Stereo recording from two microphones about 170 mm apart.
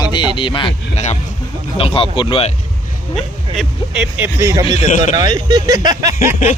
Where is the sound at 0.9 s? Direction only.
40° left (ahead or behind).